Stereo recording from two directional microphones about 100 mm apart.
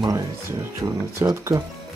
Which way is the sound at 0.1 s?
30° right (ahead or behind).